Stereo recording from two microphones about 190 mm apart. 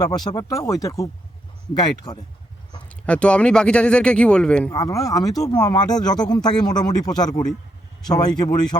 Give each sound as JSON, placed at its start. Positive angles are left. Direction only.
{"t": 0.3, "sound": "speech", "side_deg": 20}
{"t": 2.9, "sound": "speech", "side_deg": 5}
{"t": 4.7, "sound": "speech", "side_deg": 20}